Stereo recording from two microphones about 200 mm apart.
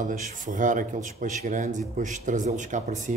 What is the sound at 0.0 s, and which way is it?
Speech, 40° right (ahead or behind).